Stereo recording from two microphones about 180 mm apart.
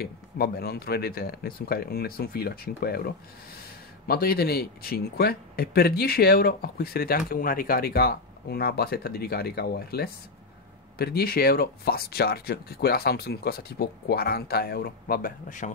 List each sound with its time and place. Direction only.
0.0 s speech: 60° left (ahead or behind)
4.1 s speech: 60° left (ahead or behind)